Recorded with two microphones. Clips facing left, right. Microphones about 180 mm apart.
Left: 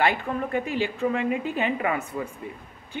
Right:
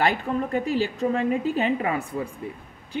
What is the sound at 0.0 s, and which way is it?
A woman's voice, 40° right (ahead or behind).